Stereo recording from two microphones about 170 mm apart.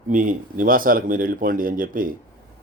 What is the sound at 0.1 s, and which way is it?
A man's voice, 50° right (ahead or behind).